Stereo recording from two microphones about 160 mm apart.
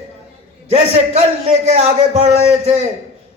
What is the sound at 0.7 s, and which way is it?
A man's voice, 40° right (ahead or behind).